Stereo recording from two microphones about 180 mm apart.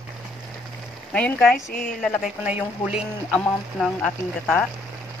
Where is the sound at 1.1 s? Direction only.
5° left (ahead or behind).